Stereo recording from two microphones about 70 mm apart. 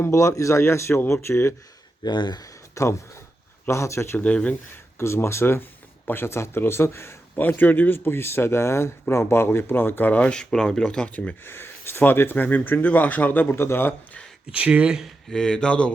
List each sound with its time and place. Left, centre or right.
0.0 s speech: left
2.0 s speech: left
2.8 s speech: left
4.2 s speech: centre
4.9 s speech: left
7.3 s speech: left
11.4 s speech: left
14.5 s speech: centre
15.3 s speech: centre